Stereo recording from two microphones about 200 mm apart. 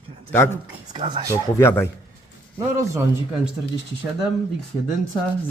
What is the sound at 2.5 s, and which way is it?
Speech, 15° right (ahead or behind).